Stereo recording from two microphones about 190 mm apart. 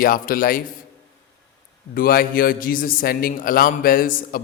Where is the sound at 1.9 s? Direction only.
50° left (ahead or behind).